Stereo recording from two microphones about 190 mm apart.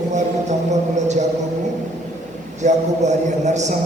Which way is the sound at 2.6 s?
40° right (ahead or behind).